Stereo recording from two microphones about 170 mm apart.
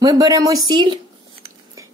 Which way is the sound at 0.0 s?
20° right (ahead or behind).